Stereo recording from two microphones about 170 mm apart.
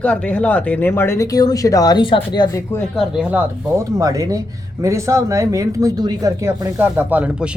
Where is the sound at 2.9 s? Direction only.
5° right (ahead or behind).